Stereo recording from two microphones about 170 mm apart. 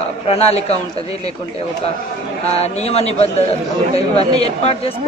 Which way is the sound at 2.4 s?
40° left (ahead or behind).